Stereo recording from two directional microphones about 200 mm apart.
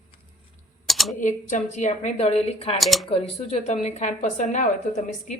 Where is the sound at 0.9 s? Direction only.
Centre (ahead or behind).